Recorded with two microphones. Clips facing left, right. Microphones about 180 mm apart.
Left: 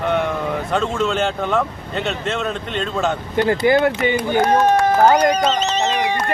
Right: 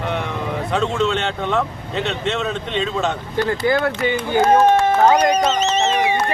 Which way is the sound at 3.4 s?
20° left (ahead or behind).